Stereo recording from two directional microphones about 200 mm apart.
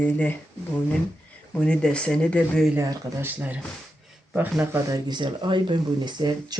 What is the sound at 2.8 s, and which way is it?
Speech, 10° right (ahead or behind).